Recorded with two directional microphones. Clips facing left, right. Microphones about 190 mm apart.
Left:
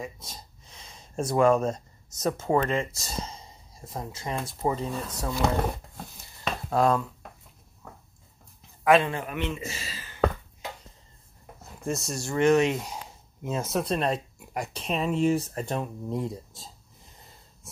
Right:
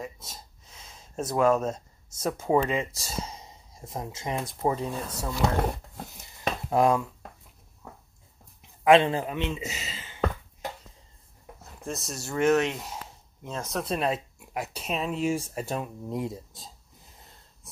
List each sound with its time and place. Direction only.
0.0 s speech: 5° right (ahead or behind)
3.3 s speech: 20° right (ahead or behind)
6.7 s speech: 15° right (ahead or behind)
8.8 s a man's voice: 25° right (ahead or behind)
11.8 s speech: centre (ahead or behind)